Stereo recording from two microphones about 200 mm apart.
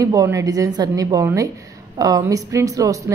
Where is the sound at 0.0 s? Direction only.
15° right (ahead or behind).